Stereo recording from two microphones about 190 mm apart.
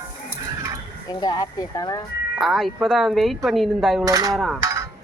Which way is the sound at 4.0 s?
20° right (ahead or behind).